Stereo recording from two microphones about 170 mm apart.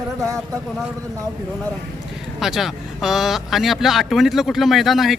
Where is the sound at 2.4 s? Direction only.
Centre (ahead or behind).